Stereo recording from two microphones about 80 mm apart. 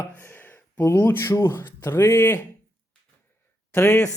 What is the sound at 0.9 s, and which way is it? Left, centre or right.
Speech, left.